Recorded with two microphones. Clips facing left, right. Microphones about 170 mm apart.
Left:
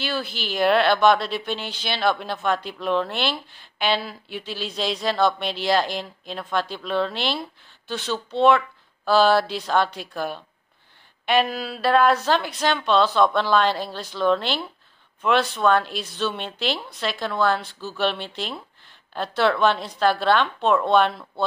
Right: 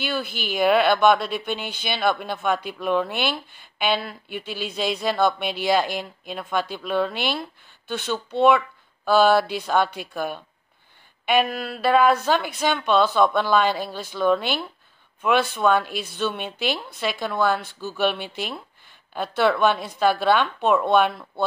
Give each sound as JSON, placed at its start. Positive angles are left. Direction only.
{"t": 0.0, "sound": "a woman's voice", "side_deg": 0}
{"t": 0.3, "sound": "speech", "side_deg": -50}
{"t": 0.6, "sound": "a woman's voice", "side_deg": 0}
{"t": 1.6, "sound": "speech", "side_deg": -55}
{"t": 1.9, "sound": "a woman's voice", "side_deg": 0}
{"t": 4.5, "sound": "speech", "side_deg": -55}
{"t": 4.9, "sound": "a woman's voice", "side_deg": 0}